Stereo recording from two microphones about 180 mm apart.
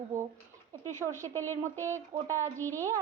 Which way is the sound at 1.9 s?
15° right (ahead or behind).